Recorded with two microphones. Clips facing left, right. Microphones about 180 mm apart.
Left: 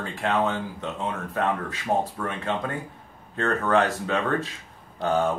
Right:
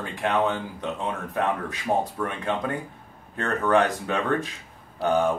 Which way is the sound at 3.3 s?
15° right (ahead or behind).